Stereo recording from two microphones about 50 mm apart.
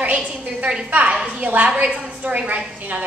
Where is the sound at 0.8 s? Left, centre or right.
Right.